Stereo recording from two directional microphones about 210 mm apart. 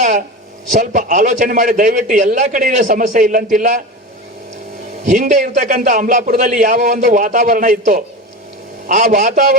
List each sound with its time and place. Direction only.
0.0 s a man's voice: 35° right (ahead or behind)
5.0 s a man's voice: 40° right (ahead or behind)